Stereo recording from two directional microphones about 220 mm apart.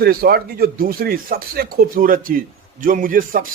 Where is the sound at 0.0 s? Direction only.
45° right (ahead or behind).